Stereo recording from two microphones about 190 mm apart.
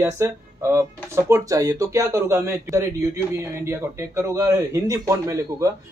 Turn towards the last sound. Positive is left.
turn(degrees=-15)  # may be behind; listen again after turning